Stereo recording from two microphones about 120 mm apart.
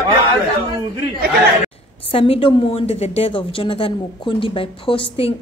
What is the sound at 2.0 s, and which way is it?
A woman's voice, 50° left (ahead or behind).